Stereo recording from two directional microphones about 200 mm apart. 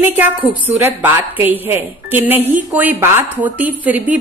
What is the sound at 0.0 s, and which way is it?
A woman's voice, 10° right (ahead or behind).